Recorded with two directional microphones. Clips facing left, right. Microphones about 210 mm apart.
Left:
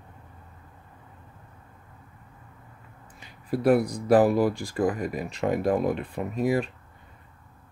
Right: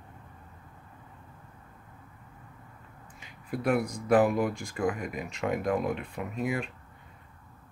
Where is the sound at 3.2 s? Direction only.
35° left (ahead or behind).